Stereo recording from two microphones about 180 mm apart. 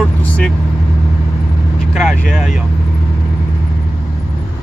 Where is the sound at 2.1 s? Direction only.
45° left (ahead or behind).